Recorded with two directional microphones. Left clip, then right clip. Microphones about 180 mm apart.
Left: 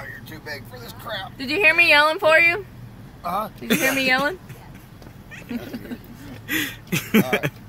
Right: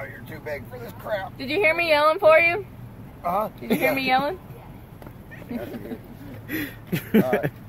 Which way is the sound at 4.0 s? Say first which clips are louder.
Left 2 dB; 40° left (ahead or behind).